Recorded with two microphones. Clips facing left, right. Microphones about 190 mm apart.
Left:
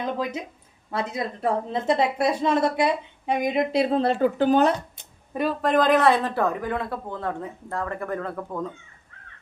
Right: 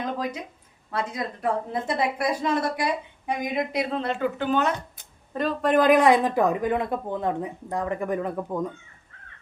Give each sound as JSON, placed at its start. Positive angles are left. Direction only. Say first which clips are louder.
{"t": 0.2, "sound": "a woman's voice", "louder": "left 2 dB", "side_deg": 25}
{"t": 4.9, "sound": "a sound", "louder": "left 1 dB", "side_deg": 10}
{"t": 5.6, "sound": "speech", "louder": "right 2 dB", "side_deg": -5}